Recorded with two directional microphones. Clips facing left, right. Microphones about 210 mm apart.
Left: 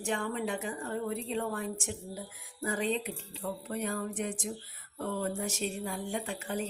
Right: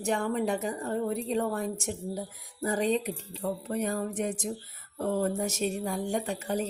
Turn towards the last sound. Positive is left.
turn(degrees=-40)  # may be behind; listen again after turning